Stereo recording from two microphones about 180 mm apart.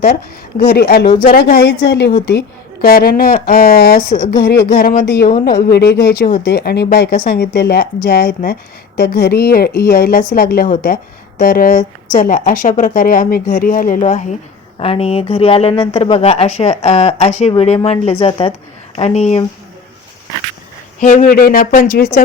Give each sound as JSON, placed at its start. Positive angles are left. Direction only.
{"t": 0.6, "sound": "speech", "side_deg": 60}
{"t": 2.8, "sound": "a woman's voice", "side_deg": 55}
{"t": 21.0, "sound": "a woman's voice", "side_deg": 45}